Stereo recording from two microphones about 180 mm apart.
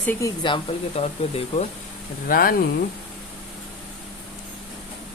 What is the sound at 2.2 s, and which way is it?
Speech, 55° left (ahead or behind).